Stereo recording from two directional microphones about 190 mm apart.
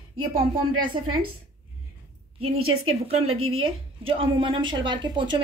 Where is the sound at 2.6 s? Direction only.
90° right.